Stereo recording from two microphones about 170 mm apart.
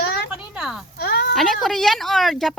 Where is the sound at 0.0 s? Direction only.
70° left (ahead or behind).